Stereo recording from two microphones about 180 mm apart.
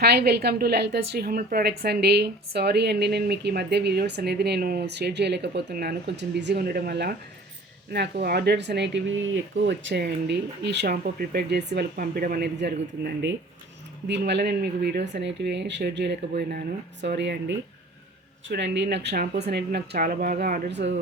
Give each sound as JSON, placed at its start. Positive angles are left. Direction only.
{"t": 0.0, "sound": "a woman's voice", "side_deg": -65}
{"t": 1.6, "sound": "speech", "side_deg": -65}
{"t": 10.9, "sound": "a woman's voice", "side_deg": -55}
{"t": 12.5, "sound": "speech", "side_deg": -70}
{"t": 18.4, "sound": "speech", "side_deg": -80}
{"t": 19.2, "sound": "a woman's voice", "side_deg": -60}
{"t": 20.7, "sound": "speech", "side_deg": -75}